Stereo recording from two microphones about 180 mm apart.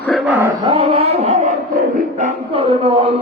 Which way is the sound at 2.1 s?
35° right (ahead or behind).